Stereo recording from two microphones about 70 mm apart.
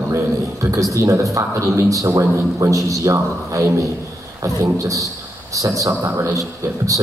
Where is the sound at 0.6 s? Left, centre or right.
Right.